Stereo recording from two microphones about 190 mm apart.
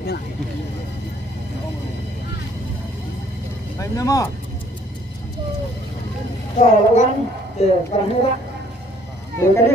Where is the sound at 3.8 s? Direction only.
15° left (ahead or behind).